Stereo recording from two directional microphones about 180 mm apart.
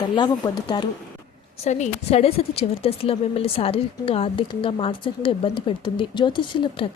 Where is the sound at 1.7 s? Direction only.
40° left (ahead or behind).